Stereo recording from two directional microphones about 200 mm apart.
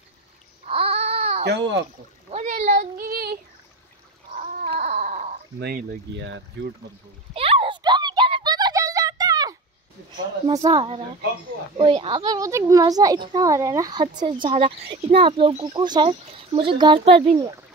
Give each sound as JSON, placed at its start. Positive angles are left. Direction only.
{"t": 0.7, "sound": "babbling", "side_deg": -30}
{"t": 1.4, "sound": "speech", "side_deg": -60}
{"t": 2.3, "sound": "child singing", "side_deg": -40}
{"t": 4.3, "sound": "cat", "side_deg": -35}
{"t": 5.6, "sound": "speech", "side_deg": -50}
{"t": 7.3, "sound": "a sound", "side_deg": -25}
{"t": 10.1, "sound": "speech", "side_deg": -20}